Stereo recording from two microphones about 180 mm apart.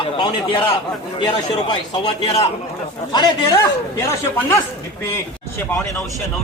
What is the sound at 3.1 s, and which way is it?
A man's voice, 20° left (ahead or behind).